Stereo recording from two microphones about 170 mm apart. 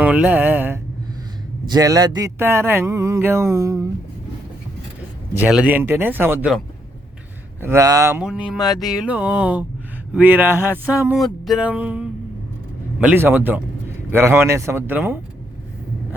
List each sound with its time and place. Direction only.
0.0 s speech: 10° right (ahead or behind)
1.6 s speech: 20° right (ahead or behind)
5.3 s speech: 5° right (ahead or behind)
7.6 s speech: 15° right (ahead or behind)
8.2 s a sound: 5° right (ahead or behind)
8.8 s speech: 5° right (ahead or behind)